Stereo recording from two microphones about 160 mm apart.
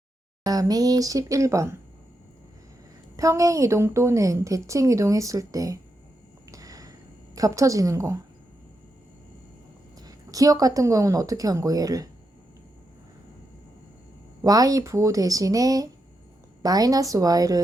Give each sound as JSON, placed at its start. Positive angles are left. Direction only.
{"t": 0.4, "sound": "a woman's voice", "side_deg": -25}
{"t": 3.2, "sound": "a woman's voice", "side_deg": -20}
{"t": 6.5, "sound": "a sound", "side_deg": -20}
{"t": 7.3, "sound": "a woman's voice", "side_deg": -20}
{"t": 10.0, "sound": "a woman's voice", "side_deg": -25}
{"t": 14.4, "sound": "a woman's voice", "side_deg": -20}